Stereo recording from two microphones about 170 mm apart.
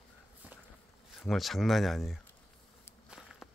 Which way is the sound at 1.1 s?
Centre (ahead or behind).